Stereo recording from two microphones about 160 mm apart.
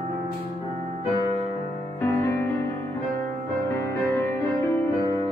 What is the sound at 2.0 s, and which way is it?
Music, 15° left (ahead or behind).